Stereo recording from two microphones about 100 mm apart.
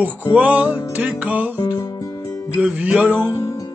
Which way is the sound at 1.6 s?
35° left (ahead or behind).